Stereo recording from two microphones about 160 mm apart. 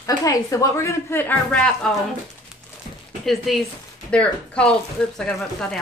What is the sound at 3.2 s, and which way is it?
A woman's voice, centre (ahead or behind).